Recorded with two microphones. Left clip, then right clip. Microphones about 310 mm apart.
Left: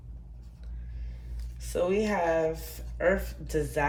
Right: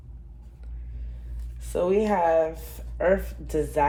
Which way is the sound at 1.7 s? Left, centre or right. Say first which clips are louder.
Right 4 dB; centre.